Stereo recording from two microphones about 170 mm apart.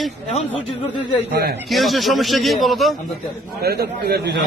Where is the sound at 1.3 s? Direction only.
65° right (ahead or behind).